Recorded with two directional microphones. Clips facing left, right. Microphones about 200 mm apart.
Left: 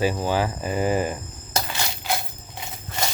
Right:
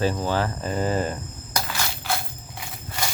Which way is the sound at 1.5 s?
25° left (ahead or behind).